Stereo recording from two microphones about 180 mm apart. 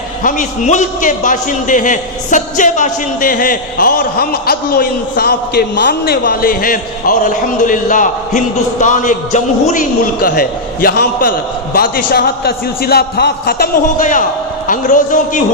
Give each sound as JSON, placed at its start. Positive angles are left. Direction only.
{"t": 0.2, "sound": "a man's voice", "side_deg": 45}